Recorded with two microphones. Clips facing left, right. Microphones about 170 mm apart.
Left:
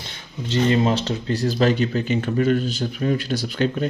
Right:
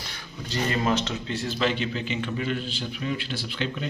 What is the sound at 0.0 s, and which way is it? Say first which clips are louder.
Speech: left 5 dB; 25° left (ahead or behind).